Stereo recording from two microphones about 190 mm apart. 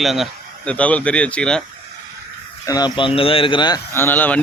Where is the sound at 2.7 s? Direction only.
20° left (ahead or behind).